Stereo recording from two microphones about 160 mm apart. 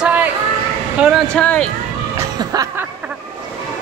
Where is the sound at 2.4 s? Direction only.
20° right (ahead or behind).